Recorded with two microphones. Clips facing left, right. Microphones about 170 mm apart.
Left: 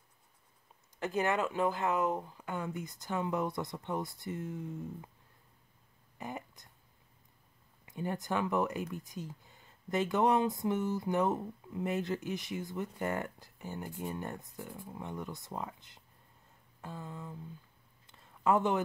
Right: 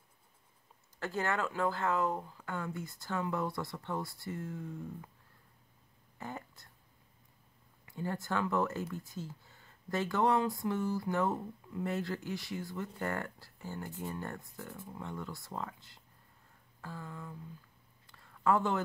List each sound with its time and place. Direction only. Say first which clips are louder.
0.9 s speech: left 3 dB; 20° left (ahead or behind)
6.1 s speech: left 1 dB; 15° left (ahead or behind)
7.8 s speech: left 1 dB; 20° left (ahead or behind)
18.0 s a sound: even; 20° left (ahead or behind)